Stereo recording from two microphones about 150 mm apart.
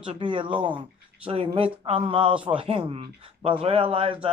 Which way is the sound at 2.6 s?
35° right (ahead or behind).